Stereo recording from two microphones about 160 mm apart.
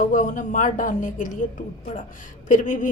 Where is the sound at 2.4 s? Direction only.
55° left (ahead or behind).